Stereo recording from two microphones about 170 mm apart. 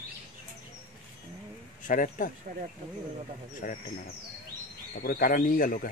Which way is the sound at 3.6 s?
55° left (ahead or behind).